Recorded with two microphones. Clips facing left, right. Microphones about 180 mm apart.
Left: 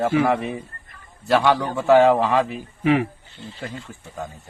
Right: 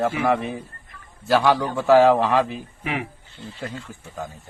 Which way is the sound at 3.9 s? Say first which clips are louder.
Even; centre (ahead or behind).